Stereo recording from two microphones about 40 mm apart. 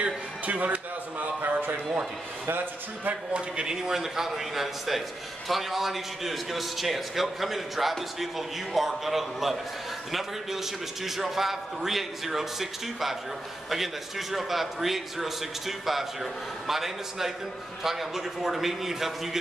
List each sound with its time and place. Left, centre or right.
0.0 s a man's voice: right
1.4 s a sound: right
2.4 s a man's voice: right
3.3 s speech: right
3.7 s a man's voice: centre